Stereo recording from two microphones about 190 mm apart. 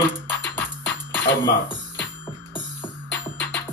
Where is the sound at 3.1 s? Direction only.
10° left (ahead or behind).